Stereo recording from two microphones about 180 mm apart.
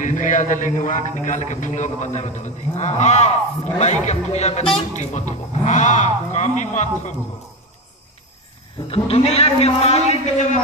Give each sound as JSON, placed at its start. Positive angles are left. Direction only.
{"t": 0.0, "sound": "a man's voice", "side_deg": 45}
{"t": 8.9, "sound": "a man's voice", "side_deg": 35}